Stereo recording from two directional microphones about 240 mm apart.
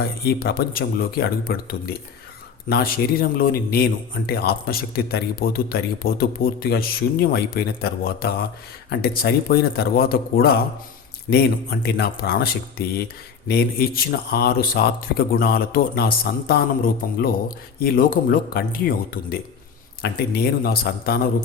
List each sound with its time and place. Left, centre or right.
0.0 s speech: left